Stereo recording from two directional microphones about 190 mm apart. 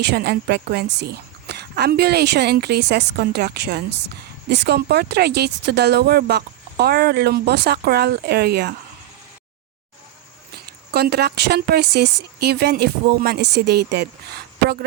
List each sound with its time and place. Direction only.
0.0 s speech: 60° right (ahead or behind)
10.5 s speech: 55° right (ahead or behind)